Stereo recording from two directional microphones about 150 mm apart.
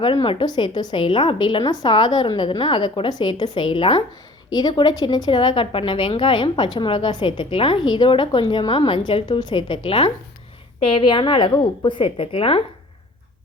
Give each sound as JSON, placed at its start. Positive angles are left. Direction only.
{"t": 0.0, "sound": "a woman's voice", "side_deg": 35}
{"t": 4.4, "sound": "a woman's voice", "side_deg": 25}